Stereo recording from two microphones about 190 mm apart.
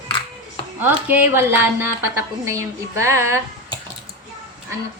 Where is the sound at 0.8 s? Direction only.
10° right (ahead or behind).